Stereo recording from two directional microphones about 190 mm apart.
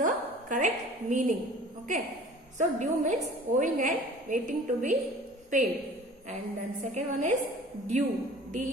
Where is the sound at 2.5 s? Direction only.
40° right (ahead or behind).